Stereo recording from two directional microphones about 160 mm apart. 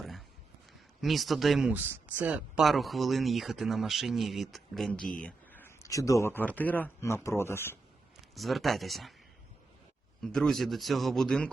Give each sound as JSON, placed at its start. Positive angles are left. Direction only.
{"t": 0.0, "sound": "a sound", "side_deg": 0}
{"t": 0.7, "sound": "a man's voice", "side_deg": 0}
{"t": 8.1, "sound": "speech", "side_deg": 0}
{"t": 10.2, "sound": "speech", "side_deg": 5}